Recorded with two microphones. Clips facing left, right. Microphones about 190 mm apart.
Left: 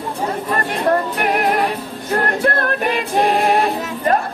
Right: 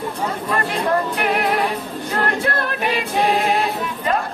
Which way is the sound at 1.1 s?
45° left (ahead or behind).